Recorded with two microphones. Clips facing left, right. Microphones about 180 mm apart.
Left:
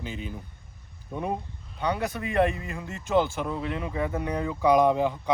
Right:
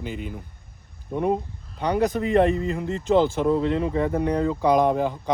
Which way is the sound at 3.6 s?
35° right (ahead or behind).